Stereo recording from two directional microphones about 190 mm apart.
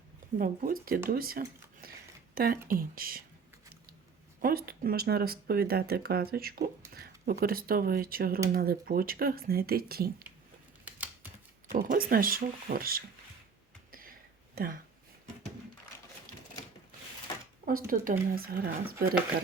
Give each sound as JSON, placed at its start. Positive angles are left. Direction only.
{"t": 0.3, "sound": "speech", "side_deg": -50}
{"t": 4.4, "sound": "speech", "side_deg": -50}
{"t": 10.8, "sound": "a sound", "side_deg": -10}
{"t": 11.7, "sound": "speech", "side_deg": -45}
{"t": 13.9, "sound": "a sound", "side_deg": -50}
{"t": 17.7, "sound": "speech", "side_deg": -50}